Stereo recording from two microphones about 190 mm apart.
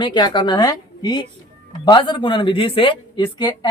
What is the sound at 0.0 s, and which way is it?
Speech, 25° left (ahead or behind).